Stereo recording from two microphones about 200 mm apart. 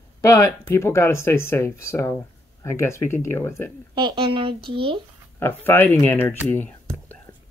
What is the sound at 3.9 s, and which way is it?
Speech, 25° right (ahead or behind).